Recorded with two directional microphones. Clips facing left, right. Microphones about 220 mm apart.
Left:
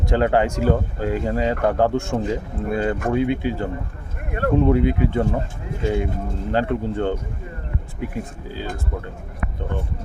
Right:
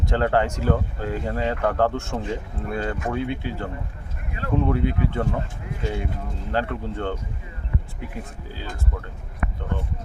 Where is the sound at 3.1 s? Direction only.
15° left (ahead or behind).